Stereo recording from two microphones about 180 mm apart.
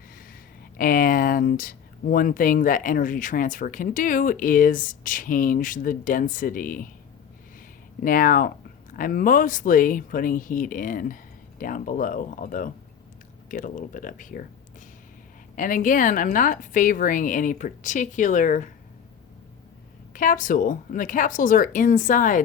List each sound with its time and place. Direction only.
0.8 s speech: 50° left (ahead or behind)
8.0 s speech: 50° left (ahead or behind)
15.5 s speech: 45° left (ahead or behind)
20.1 s speech: 50° left (ahead or behind)